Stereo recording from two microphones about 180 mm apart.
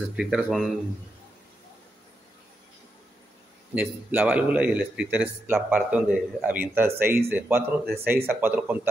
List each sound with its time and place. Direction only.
0.1 s speech: 5° right (ahead or behind)
3.7 s a man's voice: 10° right (ahead or behind)
7.8 s speech: 55° right (ahead or behind)
8.3 s a man's voice: 10° right (ahead or behind)